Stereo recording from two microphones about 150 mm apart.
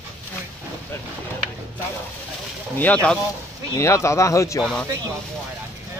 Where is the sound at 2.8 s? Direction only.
10° left (ahead or behind).